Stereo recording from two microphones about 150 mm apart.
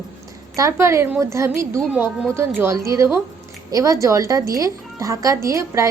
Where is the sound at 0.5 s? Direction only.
20° right (ahead or behind).